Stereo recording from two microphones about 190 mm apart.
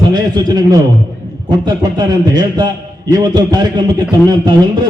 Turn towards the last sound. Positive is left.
turn(degrees=-25)  # may be behind; listen again after turning